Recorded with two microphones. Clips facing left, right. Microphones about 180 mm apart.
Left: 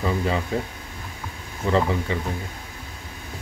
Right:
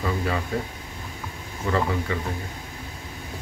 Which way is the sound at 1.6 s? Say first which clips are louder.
Left 3 dB; 25° left (ahead or behind).